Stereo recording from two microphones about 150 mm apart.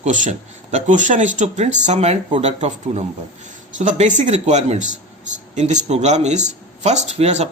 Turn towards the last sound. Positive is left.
turn(degrees=-45)  # may be behind; listen again after turning